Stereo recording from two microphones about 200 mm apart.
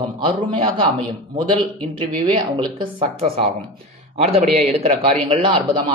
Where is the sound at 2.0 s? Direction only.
30° right (ahead or behind).